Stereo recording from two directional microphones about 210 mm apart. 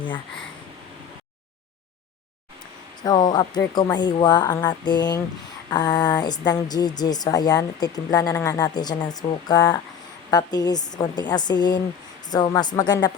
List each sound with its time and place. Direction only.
3.0 s a woman's voice: 20° left (ahead or behind)